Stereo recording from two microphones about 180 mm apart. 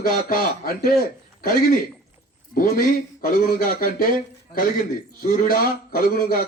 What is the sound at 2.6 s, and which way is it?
Speech, 55° left (ahead or behind).